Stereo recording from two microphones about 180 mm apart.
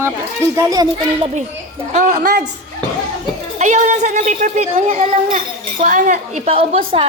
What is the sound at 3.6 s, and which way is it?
A child's voice, 40° right (ahead or behind).